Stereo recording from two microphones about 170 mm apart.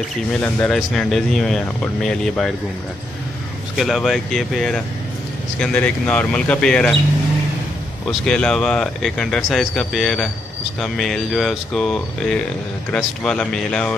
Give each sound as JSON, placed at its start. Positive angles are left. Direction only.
{"t": 0.3, "sound": "speech", "side_deg": 5}
{"t": 3.7, "sound": "speech", "side_deg": 0}
{"t": 8.1, "sound": "speech", "side_deg": 5}